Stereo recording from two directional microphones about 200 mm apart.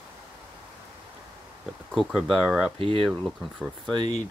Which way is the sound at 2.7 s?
25° right (ahead or behind).